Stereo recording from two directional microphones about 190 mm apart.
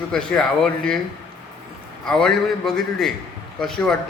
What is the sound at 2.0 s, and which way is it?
A man's voice, 5° left (ahead or behind).